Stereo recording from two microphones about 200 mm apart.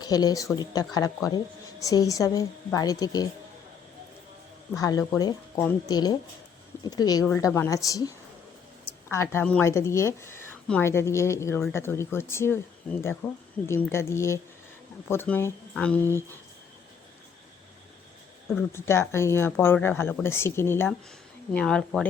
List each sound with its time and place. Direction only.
0.0 s speech: 20° left (ahead or behind)
4.8 s speech: 15° left (ahead or behind)
18.4 s speech: 10° left (ahead or behind)